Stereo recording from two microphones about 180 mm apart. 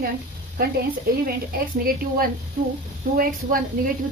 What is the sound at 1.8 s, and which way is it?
Speech, 55° right (ahead or behind).